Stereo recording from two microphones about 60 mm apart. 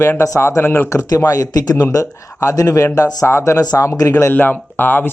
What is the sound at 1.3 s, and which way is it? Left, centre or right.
Speech, left.